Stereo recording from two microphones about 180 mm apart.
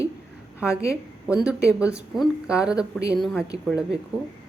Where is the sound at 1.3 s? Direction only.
5° right (ahead or behind).